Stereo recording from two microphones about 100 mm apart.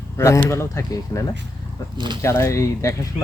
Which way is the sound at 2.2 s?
30° left (ahead or behind).